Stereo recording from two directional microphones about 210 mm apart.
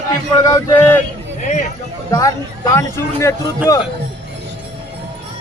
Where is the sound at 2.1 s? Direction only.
15° left (ahead or behind).